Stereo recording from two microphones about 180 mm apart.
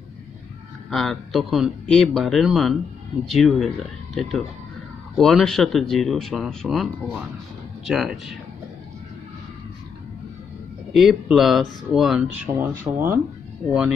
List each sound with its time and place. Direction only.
0.8 s speech: centre (ahead or behind)
10.9 s speech: centre (ahead or behind)